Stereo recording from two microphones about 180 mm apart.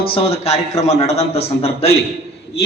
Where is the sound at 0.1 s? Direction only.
35° left (ahead or behind).